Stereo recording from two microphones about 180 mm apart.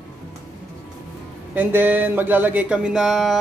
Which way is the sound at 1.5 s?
10° right (ahead or behind).